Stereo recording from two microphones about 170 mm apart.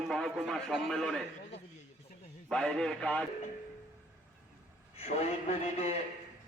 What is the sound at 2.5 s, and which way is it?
Speech, 5° left (ahead or behind).